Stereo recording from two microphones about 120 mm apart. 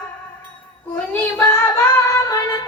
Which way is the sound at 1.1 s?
15° left (ahead or behind).